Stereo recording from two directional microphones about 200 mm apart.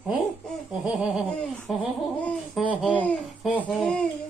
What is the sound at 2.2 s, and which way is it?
Babbling, 5° left (ahead or behind).